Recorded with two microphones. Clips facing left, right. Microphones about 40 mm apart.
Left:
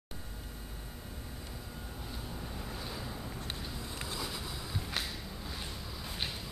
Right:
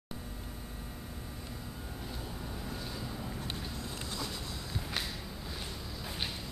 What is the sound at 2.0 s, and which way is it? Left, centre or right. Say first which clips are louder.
Vehicle: right 1 dB; centre.